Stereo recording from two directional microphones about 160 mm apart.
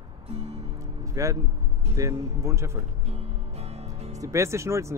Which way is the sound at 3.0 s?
40° right (ahead or behind).